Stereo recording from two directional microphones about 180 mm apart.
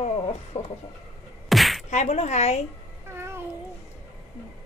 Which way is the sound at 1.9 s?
40° left (ahead or behind).